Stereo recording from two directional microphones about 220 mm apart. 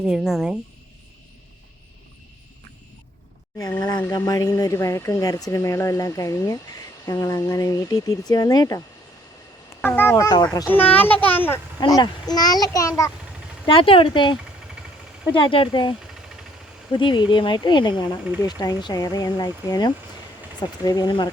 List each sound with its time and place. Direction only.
0.0 s speech: 5° right (ahead or behind)
3.6 s speech: 15° left (ahead or behind)
9.8 s speech: 10° left (ahead or behind)